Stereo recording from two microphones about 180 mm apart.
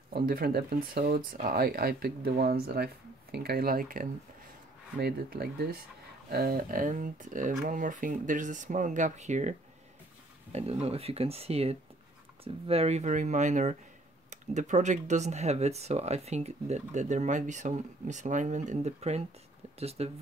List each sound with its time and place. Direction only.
0.1 s speech: 55° right (ahead or behind); by 20.1 s 35° right (ahead or behind)